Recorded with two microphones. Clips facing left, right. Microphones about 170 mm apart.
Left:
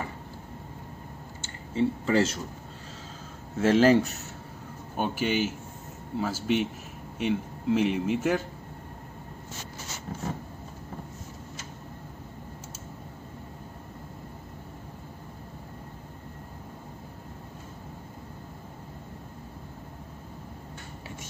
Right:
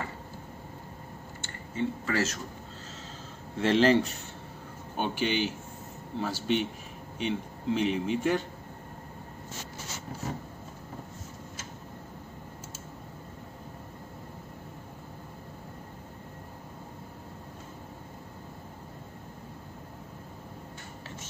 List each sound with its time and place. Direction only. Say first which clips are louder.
1.4 s speech: left 5 dB; 25° left (ahead or behind)
3.5 s a man's voice: left 3 dB; 5° left (ahead or behind)